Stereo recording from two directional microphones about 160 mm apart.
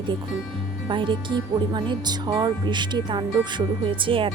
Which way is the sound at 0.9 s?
30° right (ahead or behind).